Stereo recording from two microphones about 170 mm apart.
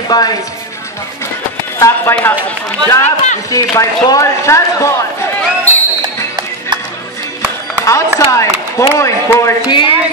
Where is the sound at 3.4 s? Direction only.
20° left (ahead or behind).